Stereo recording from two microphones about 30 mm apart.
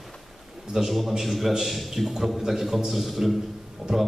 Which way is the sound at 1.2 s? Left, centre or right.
Centre.